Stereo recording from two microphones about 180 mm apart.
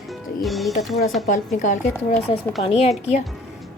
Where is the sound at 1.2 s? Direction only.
45° left (ahead or behind).